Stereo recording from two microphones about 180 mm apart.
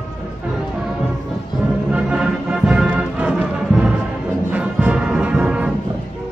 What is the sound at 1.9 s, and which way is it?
Music, 5° right (ahead or behind).